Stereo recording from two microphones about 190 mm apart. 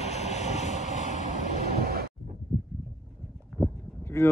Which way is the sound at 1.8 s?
55° right (ahead or behind).